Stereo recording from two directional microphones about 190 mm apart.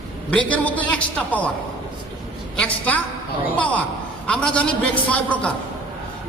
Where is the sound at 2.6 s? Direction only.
5° left (ahead or behind).